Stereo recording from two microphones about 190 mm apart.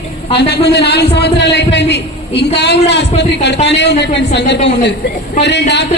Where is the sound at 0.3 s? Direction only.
60° left (ahead or behind).